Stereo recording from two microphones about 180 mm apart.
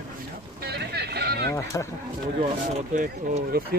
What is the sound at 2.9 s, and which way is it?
Speech, 45° right (ahead or behind).